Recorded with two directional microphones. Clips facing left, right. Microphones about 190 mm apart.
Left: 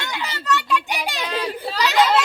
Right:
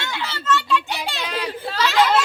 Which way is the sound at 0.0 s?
15° left (ahead or behind).